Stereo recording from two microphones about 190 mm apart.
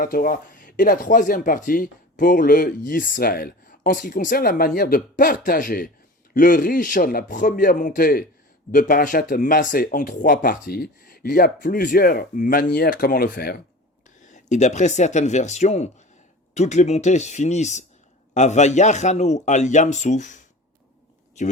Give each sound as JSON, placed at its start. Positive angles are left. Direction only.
{"t": 0.0, "sound": "speech", "side_deg": 50}
{"t": 14.3, "sound": "speech", "side_deg": 40}